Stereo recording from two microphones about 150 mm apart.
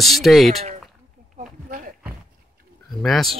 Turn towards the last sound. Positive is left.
turn(degrees=0)  # may be behind; listen again after turning